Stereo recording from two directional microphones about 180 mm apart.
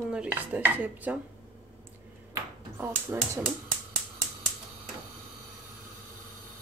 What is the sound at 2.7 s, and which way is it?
Speech, 15° right (ahead or behind).